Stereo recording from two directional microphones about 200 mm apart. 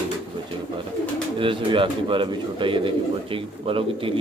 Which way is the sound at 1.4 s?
25° right (ahead or behind).